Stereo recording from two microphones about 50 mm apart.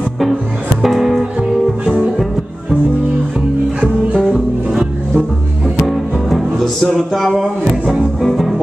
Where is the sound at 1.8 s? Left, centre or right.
Centre.